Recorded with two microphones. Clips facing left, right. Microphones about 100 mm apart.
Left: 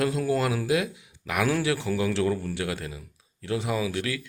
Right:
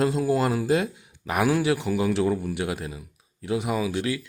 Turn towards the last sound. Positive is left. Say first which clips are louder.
# right 2 dB
turn(degrees=-25)  # may be behind; listen again after turning